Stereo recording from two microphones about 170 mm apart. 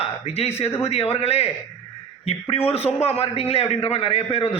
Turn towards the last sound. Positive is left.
turn(degrees=35)  # may be behind; listen again after turning